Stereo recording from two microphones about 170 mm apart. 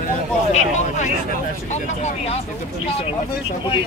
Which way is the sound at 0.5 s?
45° left (ahead or behind).